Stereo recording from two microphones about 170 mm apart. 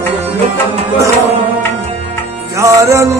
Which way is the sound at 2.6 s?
15° right (ahead or behind).